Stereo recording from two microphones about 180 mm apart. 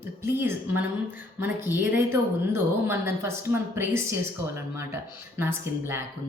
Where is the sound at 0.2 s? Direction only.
15° right (ahead or behind).